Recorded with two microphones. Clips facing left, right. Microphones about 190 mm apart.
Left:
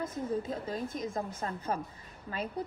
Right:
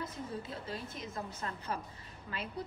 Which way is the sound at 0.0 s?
45° left (ahead or behind).